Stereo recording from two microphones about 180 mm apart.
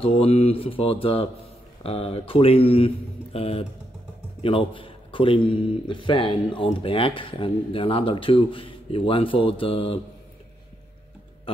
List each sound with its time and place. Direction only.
0.0 s mantra: 35° left (ahead or behind)
4.4 s a man's voice: 30° left (ahead or behind)
11.5 s music: 30° left (ahead or behind)